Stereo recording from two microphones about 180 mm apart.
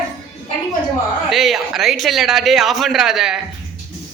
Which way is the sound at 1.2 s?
Centre (ahead or behind).